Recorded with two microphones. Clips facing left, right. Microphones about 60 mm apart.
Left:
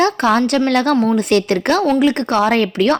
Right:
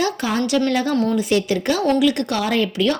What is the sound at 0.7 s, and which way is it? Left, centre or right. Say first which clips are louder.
Speech: left 5 dB; left.